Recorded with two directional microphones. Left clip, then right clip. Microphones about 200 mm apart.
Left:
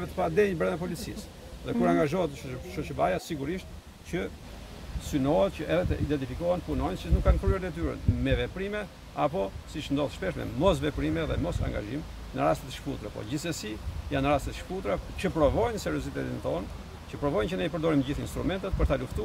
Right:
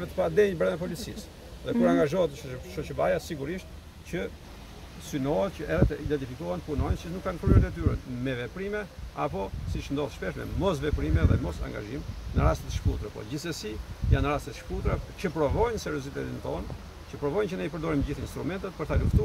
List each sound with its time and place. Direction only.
0.2 s speech: 5° left (ahead or behind)